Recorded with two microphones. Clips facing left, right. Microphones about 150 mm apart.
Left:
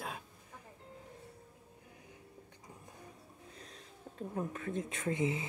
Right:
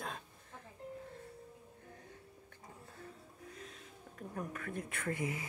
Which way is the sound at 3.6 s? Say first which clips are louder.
Right 2 dB; 35° left (ahead or behind).